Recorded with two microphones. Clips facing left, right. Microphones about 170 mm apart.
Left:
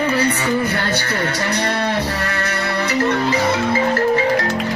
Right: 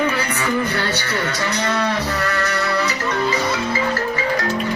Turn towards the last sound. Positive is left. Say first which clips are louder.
# left 4 dB
turn(degrees=50)  # may be behind; listen again after turning